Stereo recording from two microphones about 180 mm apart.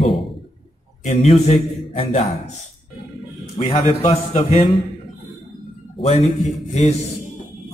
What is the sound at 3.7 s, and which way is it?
Speech, 35° left (ahead or behind).